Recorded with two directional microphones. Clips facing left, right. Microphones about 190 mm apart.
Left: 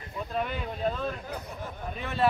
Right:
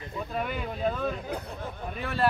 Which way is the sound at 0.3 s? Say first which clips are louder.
Left 1 dB; 5° right (ahead or behind).